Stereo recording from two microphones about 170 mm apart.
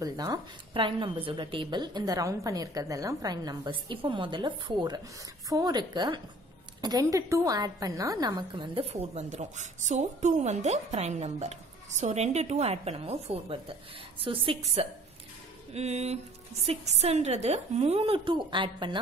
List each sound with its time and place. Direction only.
0.0 s a woman's voice: 20° right (ahead or behind)
9.1 s a woman's voice: 45° right (ahead or behind); by 18.9 s 30° right (ahead or behind)